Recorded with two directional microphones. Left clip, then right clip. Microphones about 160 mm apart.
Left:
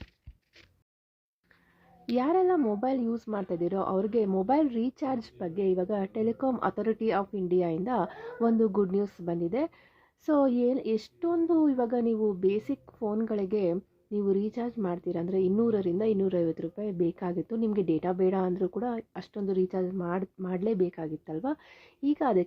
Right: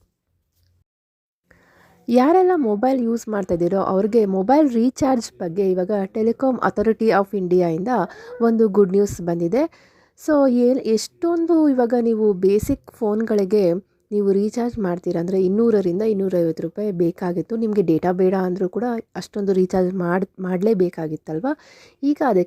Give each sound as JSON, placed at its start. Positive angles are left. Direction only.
{"t": 2.0, "sound": "a woman's voice", "side_deg": -55}
{"t": 5.4, "sound": "a woman's voice", "side_deg": -40}
{"t": 13.7, "sound": "a woman's voice", "side_deg": -45}